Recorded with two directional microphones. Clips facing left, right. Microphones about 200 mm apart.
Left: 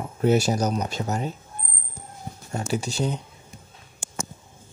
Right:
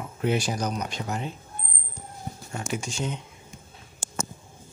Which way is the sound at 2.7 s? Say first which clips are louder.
Left 5 dB; 35° left (ahead or behind).